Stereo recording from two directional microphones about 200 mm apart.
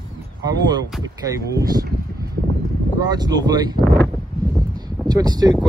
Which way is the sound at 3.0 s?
20° right (ahead or behind).